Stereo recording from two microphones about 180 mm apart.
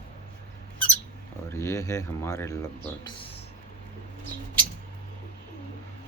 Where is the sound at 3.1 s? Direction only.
30° left (ahead or behind).